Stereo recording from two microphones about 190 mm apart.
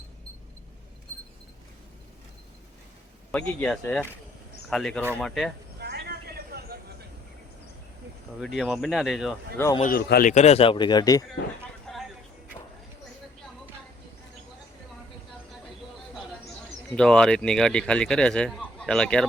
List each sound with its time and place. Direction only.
3.3 s speech: 5° left (ahead or behind)
5.8 s a sound: 55° right (ahead or behind)
8.4 s speech: centre (ahead or behind)
9.8 s speech: 50° left (ahead or behind); by 11.2 s 20° left (ahead or behind)
11.9 s a sound: 5° left (ahead or behind)
16.9 s speech: 5° left (ahead or behind)